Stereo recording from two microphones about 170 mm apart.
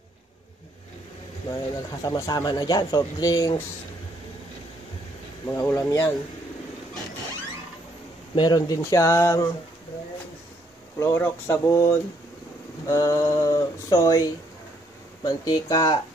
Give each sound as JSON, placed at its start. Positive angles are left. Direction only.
{"t": 2.0, "sound": "speech", "side_deg": 20}
{"t": 5.5, "sound": "speech", "side_deg": 15}
{"t": 8.4, "sound": "speech", "side_deg": 25}
{"t": 11.0, "sound": "speech", "side_deg": 15}